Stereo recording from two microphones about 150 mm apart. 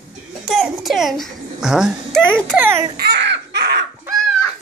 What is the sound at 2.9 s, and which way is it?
Baby laughter, 90° right.